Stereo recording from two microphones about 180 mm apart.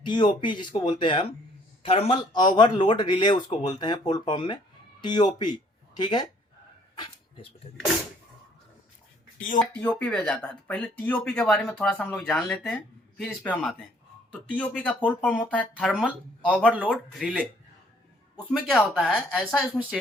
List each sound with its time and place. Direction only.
0.0 s speech: 25° left (ahead or behind)
9.7 s speech: 10° left (ahead or behind)
18.5 s speech: centre (ahead or behind)